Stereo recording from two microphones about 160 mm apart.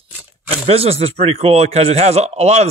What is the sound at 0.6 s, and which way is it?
Speech, 40° right (ahead or behind).